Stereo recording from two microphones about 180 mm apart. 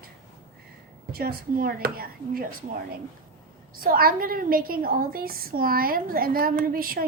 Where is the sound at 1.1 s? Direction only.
55° right (ahead or behind).